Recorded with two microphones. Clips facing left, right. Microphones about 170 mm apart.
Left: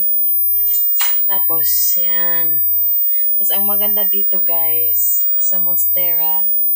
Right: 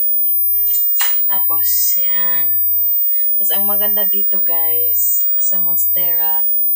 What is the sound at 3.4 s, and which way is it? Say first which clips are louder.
Speech: even; 5° left (ahead or behind).